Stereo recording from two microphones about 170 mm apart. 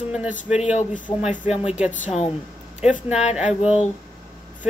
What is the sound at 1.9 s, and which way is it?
Speech, 45° left (ahead or behind).